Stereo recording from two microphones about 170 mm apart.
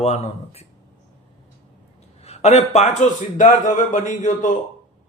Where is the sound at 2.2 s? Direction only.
40° left (ahead or behind).